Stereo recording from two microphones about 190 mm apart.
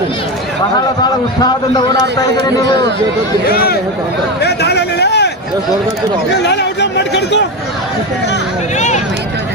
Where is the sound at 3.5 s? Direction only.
50° left (ahead or behind).